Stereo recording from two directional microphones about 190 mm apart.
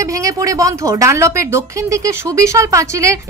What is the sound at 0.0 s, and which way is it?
Speech, 15° right (ahead or behind).